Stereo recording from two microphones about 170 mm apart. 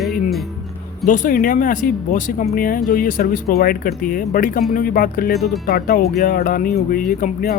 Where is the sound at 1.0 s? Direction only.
50° left (ahead or behind).